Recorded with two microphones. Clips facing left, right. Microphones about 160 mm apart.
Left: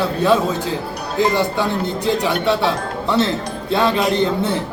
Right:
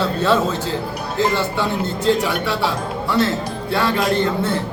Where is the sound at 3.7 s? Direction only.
20° left (ahead or behind).